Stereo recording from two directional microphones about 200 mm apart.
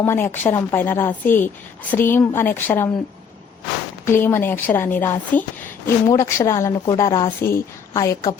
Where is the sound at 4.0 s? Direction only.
10° left (ahead or behind).